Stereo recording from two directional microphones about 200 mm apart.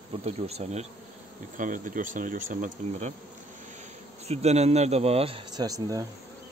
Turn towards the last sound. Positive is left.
turn(degrees=-20)  # may be behind; listen again after turning